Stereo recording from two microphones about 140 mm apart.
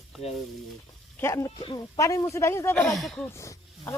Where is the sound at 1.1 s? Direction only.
20° left (ahead or behind).